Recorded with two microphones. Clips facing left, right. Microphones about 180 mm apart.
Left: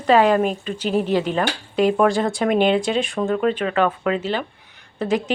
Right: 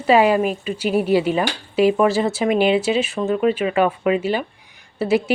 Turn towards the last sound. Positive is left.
turn(degrees=-10)  # may be behind; listen again after turning